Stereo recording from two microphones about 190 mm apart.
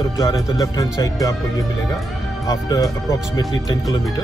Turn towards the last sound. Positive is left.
turn(degrees=20)  # may be behind; listen again after turning